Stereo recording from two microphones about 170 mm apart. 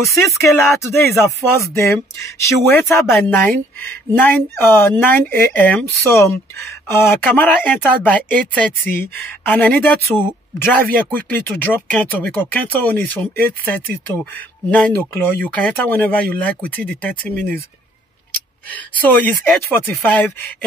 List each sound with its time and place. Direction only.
0.4 s speech: 15° left (ahead or behind)
18.7 s speech: 10° left (ahead or behind)